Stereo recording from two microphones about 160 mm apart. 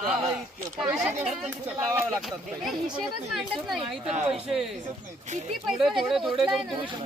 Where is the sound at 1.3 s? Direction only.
Centre (ahead or behind).